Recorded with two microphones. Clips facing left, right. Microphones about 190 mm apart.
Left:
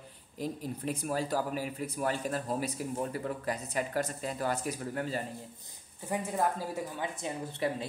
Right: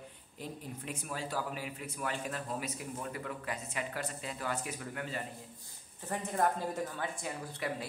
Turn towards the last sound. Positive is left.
turn(degrees=25)  # may be behind; listen again after turning